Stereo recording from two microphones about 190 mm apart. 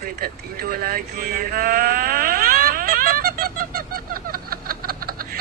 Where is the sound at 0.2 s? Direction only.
50° right (ahead or behind).